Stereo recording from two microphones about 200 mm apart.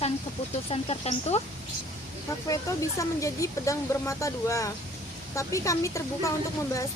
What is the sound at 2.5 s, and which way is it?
Speech, 15° left (ahead or behind).